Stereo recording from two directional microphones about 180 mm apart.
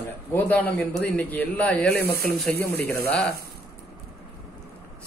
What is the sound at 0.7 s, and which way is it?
Speech, 5° left (ahead or behind).